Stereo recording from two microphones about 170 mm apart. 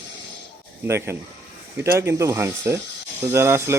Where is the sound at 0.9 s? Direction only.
15° right (ahead or behind).